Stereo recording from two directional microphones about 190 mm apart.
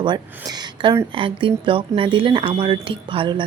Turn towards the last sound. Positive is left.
turn(degrees=-25)  # may be behind; listen again after turning